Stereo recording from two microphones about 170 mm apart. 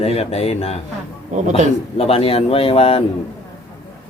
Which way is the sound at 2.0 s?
35° left (ahead or behind).